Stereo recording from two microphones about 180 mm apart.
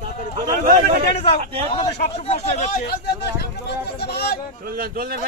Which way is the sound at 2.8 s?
60° left (ahead or behind).